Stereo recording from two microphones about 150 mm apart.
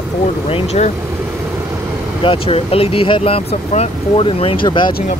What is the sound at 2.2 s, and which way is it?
Speech, 35° left (ahead or behind).